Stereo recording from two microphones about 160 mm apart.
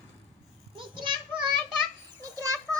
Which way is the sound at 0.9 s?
30° right (ahead or behind).